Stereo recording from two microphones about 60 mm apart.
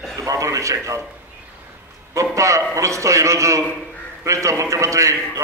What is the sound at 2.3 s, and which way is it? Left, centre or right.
A man's voice, right.